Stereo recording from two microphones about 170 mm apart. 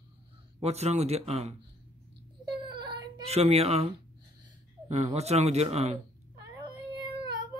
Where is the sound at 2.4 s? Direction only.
25° right (ahead or behind).